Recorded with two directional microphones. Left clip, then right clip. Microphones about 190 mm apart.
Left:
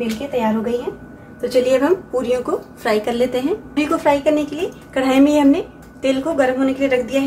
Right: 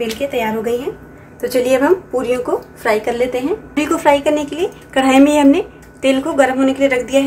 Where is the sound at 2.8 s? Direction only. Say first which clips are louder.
Right 2 dB; centre (ahead or behind).